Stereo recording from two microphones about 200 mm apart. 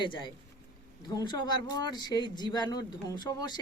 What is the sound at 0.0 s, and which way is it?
Speech, 25° left (ahead or behind).